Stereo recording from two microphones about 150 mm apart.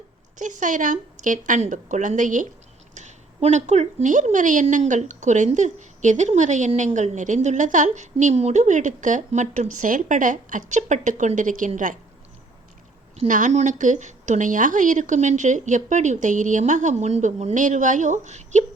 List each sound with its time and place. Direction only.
0.3 s a woman's voice: 60° right (ahead or behind)
13.1 s a woman's voice: 60° right (ahead or behind)